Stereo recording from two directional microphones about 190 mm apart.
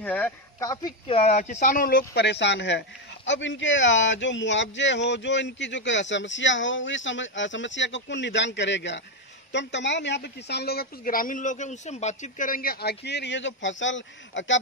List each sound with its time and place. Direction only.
0.0 s speech: 10° left (ahead or behind)
1.0 s a woman's voice: 35° left (ahead or behind); by 14.6 s 80° left